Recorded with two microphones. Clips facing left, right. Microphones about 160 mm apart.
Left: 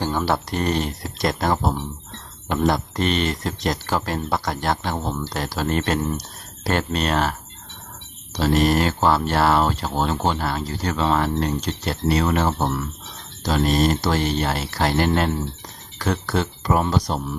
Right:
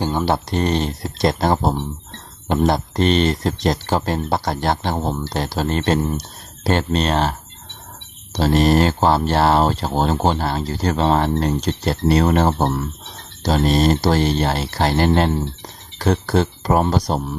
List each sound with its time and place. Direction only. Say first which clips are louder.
0.0 s speech: right 3 dB; 20° right (ahead or behind); by 17.2 s 35° right (ahead or behind)